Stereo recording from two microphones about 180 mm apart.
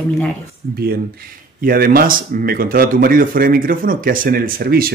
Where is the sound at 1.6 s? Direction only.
55° right (ahead or behind).